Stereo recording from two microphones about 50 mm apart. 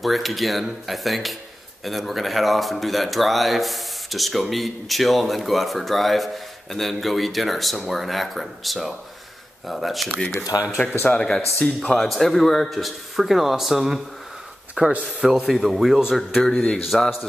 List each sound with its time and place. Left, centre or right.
0.0 s speech: centre
11.1 s speech: centre
14.8 s speech: right
15.1 s a man's voice: centre
16.4 s speech: centre